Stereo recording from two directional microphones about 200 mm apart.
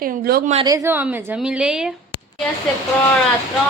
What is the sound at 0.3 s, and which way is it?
Speech, 50° right (ahead or behind).